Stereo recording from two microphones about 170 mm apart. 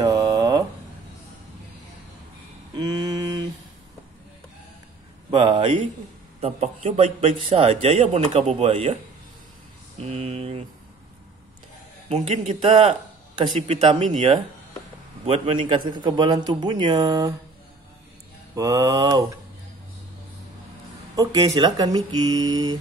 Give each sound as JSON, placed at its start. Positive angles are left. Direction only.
{"t": 0.1, "sound": "a sound", "side_deg": -20}
{"t": 2.7, "sound": "a sound", "side_deg": -25}
{"t": 5.3, "sound": "a man's voice", "side_deg": -30}
{"t": 9.9, "sound": "mantra", "side_deg": -35}
{"t": 12.1, "sound": "a man's voice", "side_deg": -35}
{"t": 15.2, "sound": "a man's voice", "side_deg": -35}
{"t": 18.5, "sound": "speech", "side_deg": -20}
{"t": 21.2, "sound": "speech", "side_deg": -20}